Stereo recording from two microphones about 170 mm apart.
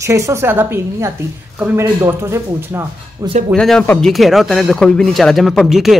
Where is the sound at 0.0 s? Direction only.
15° right (ahead or behind).